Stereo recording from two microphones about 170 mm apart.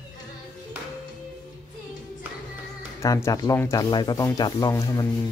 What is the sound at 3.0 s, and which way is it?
Speech, 20° left (ahead or behind).